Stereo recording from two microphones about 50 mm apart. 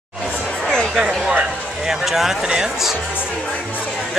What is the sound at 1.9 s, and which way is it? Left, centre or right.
Speech, centre.